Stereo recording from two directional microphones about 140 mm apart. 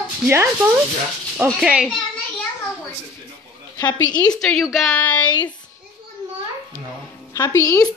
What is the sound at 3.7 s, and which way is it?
Speech, 30° left (ahead or behind).